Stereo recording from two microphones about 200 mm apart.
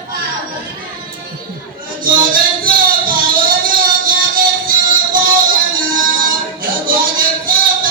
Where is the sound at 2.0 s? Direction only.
45° right (ahead or behind).